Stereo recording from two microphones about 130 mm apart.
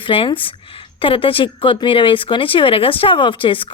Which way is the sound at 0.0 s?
40° left (ahead or behind).